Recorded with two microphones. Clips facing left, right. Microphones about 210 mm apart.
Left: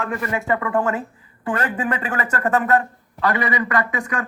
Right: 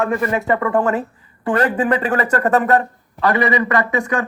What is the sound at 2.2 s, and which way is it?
Speech, 40° right (ahead or behind).